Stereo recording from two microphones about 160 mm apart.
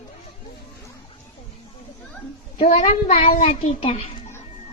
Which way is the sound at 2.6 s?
45° left (ahead or behind).